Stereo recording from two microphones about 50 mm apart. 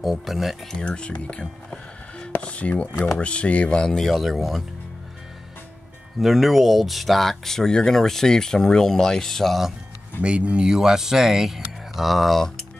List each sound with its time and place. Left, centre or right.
0.0 s speech: centre
0.7 s speech: centre
1.7 s music: left
2.4 s speech: left
3.8 s speech: centre
4.1 s speech: centre
6.1 s speech: centre
10.2 s speech: right
10.7 s speech: centre